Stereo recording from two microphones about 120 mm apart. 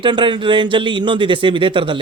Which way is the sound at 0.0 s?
40° right (ahead or behind).